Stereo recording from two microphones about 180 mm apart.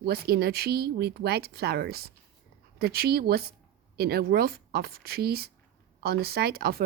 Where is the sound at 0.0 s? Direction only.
60° right (ahead or behind).